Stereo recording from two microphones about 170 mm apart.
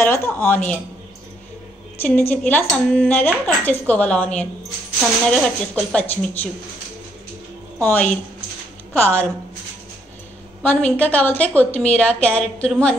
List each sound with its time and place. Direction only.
0.0 s speech: 15° left (ahead or behind)
2.0 s a woman's voice: 10° left (ahead or behind)
7.8 s a woman's voice: 10° left (ahead or behind)
10.7 s a woman's voice: 10° left (ahead or behind)